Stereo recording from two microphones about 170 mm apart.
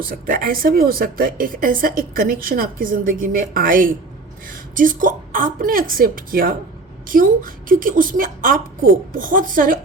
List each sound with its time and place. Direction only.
0.1 s a woman's voice: 55° right (ahead or behind)